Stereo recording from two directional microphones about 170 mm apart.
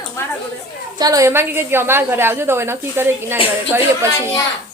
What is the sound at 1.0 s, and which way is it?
A woman's voice, 20° right (ahead or behind).